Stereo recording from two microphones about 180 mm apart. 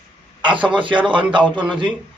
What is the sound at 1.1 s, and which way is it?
Speech, 25° right (ahead or behind).